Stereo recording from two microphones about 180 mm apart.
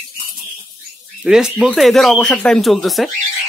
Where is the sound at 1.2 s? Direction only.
5° right (ahead or behind).